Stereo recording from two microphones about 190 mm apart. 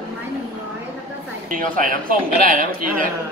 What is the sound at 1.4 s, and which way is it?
Speech, 45° right (ahead or behind).